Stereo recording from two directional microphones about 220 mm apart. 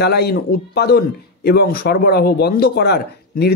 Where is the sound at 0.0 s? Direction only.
45° left (ahead or behind).